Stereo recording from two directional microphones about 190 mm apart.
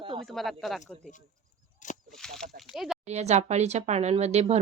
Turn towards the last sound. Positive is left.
turn(degrees=-35)  # may be behind; listen again after turning